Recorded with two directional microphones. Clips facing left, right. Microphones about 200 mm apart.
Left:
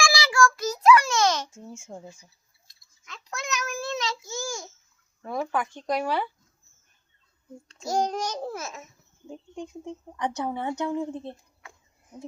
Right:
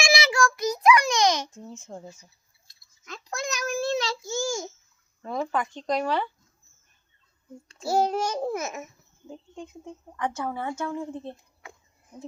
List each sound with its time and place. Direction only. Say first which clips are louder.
0.0 s child singing: even; 20° right (ahead or behind)
1.5 s speech: right 1 dB; 10° left (ahead or behind)
3.0 s child singing: right 4 dB; 40° right (ahead or behind); by 4.7 s 25° right (ahead or behind)
5.2 s speech: even; 10° left (ahead or behind)
7.9 s a child's voice: right 3 dB; 5° right (ahead or behind)
9.6 s a woman's voice: left 5 dB; 20° left (ahead or behind)